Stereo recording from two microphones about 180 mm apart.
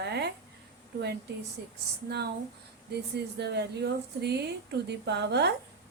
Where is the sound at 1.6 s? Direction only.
65° right (ahead or behind).